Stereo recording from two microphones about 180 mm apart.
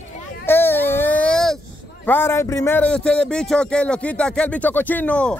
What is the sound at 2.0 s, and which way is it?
A man's voice, 15° left (ahead or behind).